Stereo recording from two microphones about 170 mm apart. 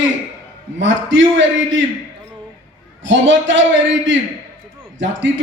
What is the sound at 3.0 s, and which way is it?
A man's voice, 90° right.